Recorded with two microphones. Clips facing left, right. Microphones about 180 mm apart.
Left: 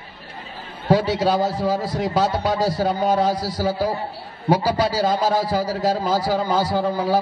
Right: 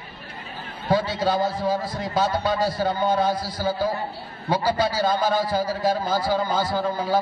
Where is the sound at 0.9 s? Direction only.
80° left.